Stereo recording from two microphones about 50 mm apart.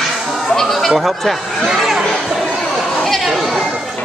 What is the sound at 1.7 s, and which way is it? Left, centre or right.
Chatter, centre.